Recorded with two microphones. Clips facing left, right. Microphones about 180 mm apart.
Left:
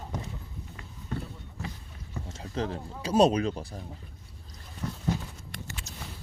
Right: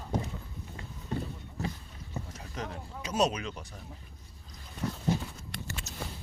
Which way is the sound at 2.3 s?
30° left (ahead or behind).